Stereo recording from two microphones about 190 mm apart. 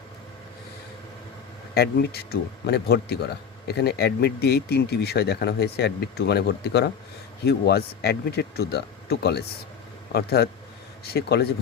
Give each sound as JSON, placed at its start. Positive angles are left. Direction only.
{"t": 1.7, "sound": "a man's voice", "side_deg": 55}